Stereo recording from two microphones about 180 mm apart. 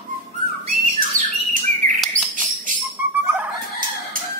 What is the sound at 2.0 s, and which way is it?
Chirp, centre (ahead or behind).